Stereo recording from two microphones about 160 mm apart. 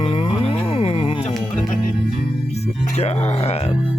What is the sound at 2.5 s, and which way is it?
Music, 40° left (ahead or behind).